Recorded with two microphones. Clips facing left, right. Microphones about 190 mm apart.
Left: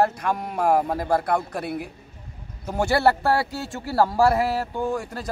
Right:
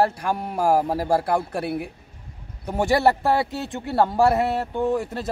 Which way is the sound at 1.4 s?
10° right (ahead or behind).